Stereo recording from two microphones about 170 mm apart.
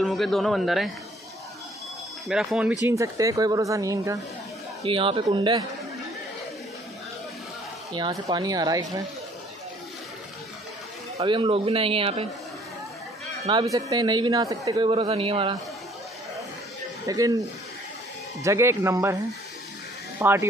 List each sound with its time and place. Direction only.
0.0 s speech: centre (ahead or behind)
2.2 s speech: 5° right (ahead or behind)
2.9 s speech: 20° right (ahead or behind)
4.8 s speech: 30° right (ahead or behind)
7.9 s speech: 25° right (ahead or behind)
11.1 s a man's voice: 30° right (ahead or behind)
13.5 s speech: 25° right (ahead or behind)
17.0 s speech: 20° right (ahead or behind)
18.4 s speech: 15° right (ahead or behind)
20.2 s speech: 10° right (ahead or behind)